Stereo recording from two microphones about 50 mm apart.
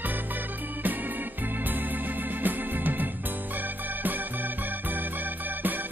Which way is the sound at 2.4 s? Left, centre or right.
Right.